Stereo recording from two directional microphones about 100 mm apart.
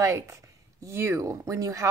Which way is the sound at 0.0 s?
30° right (ahead or behind).